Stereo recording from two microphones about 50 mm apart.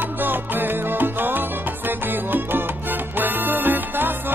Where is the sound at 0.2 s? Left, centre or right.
Right.